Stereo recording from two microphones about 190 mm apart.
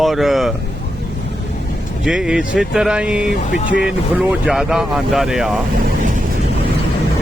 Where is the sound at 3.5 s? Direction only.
45° left (ahead or behind).